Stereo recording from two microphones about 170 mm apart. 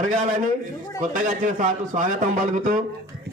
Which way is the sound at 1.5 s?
45° right (ahead or behind).